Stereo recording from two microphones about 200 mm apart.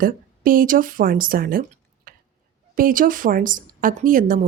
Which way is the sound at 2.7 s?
45° right (ahead or behind).